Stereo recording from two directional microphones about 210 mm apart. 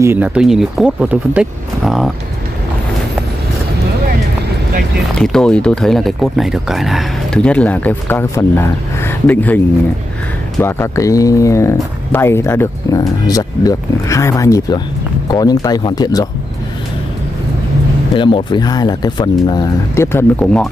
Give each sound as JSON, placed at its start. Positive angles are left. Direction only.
{"t": 0.0, "sound": "speech", "side_deg": -10}
{"t": 5.1, "sound": "speech", "side_deg": 5}
{"t": 10.6, "sound": "speech", "side_deg": 15}
{"t": 18.1, "sound": "speech", "side_deg": 20}